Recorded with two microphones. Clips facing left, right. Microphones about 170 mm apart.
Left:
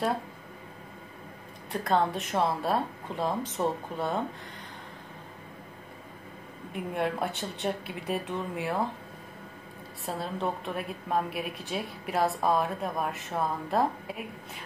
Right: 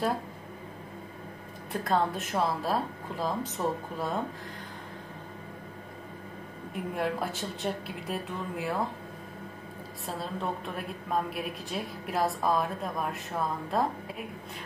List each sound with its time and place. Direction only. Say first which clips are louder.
1.7 s speech: left 1 dB; centre (ahead or behind)
6.7 s speech: left 1 dB; centre (ahead or behind)
10.0 s a woman's voice: left 2 dB; centre (ahead or behind)